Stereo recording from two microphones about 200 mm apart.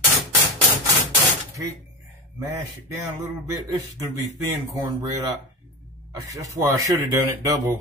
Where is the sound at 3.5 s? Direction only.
15° right (ahead or behind).